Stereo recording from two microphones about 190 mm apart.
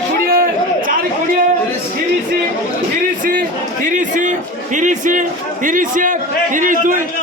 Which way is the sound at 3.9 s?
40° right (ahead or behind).